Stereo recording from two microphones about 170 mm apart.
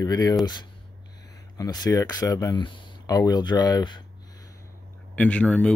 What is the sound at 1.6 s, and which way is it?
Speech, 20° left (ahead or behind).